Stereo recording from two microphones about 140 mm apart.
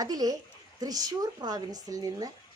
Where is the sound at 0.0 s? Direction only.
25° right (ahead or behind).